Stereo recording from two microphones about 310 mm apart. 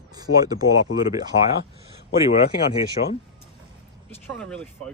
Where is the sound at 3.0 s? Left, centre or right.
Left.